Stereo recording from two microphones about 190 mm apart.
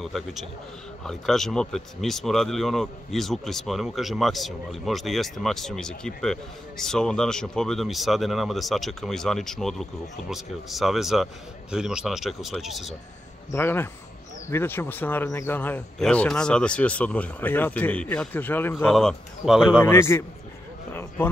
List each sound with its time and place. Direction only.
0.0 s speech: centre (ahead or behind)
13.5 s speech: 10° left (ahead or behind)
19.8 s speech: 10° left (ahead or behind)
20.9 s a sound: 10° left (ahead or behind)